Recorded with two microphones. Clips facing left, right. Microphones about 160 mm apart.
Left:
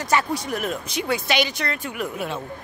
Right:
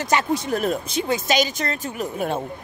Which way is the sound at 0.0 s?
20° right (ahead or behind).